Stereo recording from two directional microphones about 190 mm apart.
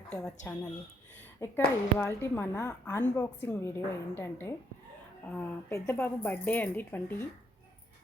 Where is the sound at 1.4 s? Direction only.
15° left (ahead or behind).